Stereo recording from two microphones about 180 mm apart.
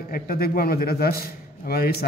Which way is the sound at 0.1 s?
55° left (ahead or behind).